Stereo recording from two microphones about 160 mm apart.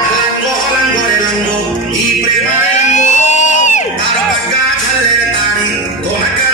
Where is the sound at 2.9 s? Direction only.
50° left (ahead or behind).